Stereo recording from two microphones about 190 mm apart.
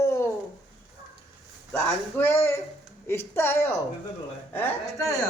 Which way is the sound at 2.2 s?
15° left (ahead or behind).